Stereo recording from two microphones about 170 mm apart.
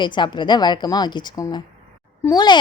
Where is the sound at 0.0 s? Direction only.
25° left (ahead or behind).